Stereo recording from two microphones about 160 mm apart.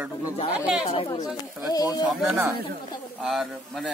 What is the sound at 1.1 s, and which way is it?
Speech, 25° left (ahead or behind).